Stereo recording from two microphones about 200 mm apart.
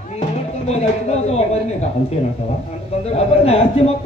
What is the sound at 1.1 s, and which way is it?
Speech, 30° left (ahead or behind).